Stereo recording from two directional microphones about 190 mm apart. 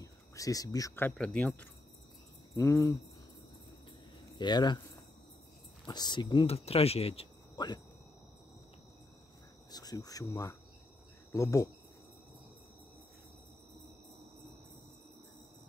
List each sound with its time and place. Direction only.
0.0 s speech: 20° left (ahead or behind)
1.1 s speech: 5° left (ahead or behind)
2.5 s speech: 15° left (ahead or behind)
4.4 s speech: 20° left (ahead or behind)
5.9 s speech: 20° left (ahead or behind)
9.7 s cricket: 20° left (ahead or behind)
11.3 s speech: 15° left (ahead or behind)